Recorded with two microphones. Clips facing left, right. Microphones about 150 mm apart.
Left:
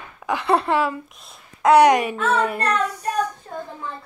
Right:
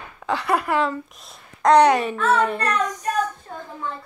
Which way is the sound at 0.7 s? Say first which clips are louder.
Even; 5° left (ahead or behind).